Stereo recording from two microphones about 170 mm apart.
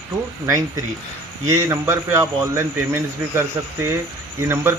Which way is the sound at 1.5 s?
15° right (ahead or behind).